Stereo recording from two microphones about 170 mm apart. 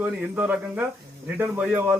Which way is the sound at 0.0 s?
10° right (ahead or behind).